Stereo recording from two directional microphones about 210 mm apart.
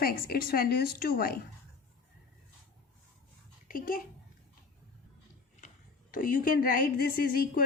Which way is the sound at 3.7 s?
40° left (ahead or behind).